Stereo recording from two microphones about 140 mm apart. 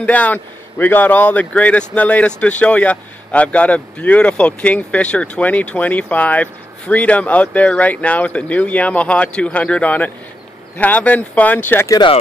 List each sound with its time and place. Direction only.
0.0 s speech: 10° left (ahead or behind)
11.9 s speech: 35° left (ahead or behind)